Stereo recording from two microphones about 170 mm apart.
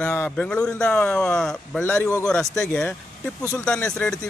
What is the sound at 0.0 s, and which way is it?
A man's voice, 10° left (ahead or behind).